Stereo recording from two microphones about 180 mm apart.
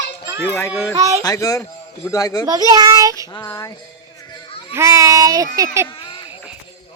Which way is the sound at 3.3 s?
20° left (ahead or behind).